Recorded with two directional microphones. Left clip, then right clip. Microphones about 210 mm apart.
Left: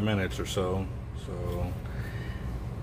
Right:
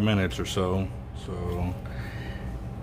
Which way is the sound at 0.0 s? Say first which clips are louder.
Right 3 dB; 35° right (ahead or behind).